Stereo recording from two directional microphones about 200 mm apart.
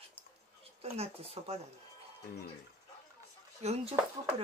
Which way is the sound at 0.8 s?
30° right (ahead or behind).